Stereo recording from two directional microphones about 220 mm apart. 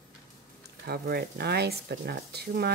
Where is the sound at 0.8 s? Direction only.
45° right (ahead or behind).